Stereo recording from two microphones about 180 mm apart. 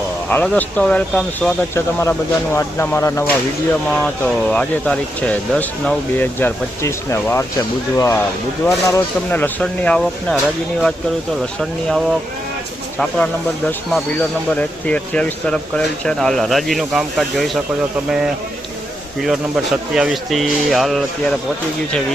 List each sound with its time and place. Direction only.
0.3 s speech: 10° left (ahead or behind)
11.6 s speech: centre (ahead or behind)
19.9 s speech: 5° right (ahead or behind)